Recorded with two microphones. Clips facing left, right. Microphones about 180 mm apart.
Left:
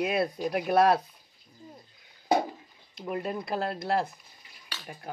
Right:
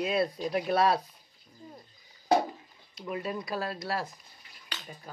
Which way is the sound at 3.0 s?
55° left (ahead or behind).